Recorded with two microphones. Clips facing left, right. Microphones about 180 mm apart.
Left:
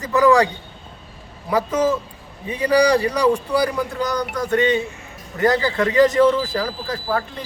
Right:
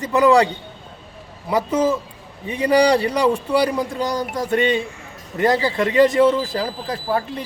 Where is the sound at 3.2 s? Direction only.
25° right (ahead or behind).